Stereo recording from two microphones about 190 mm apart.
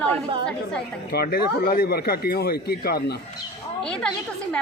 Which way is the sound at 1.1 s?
55° left (ahead or behind).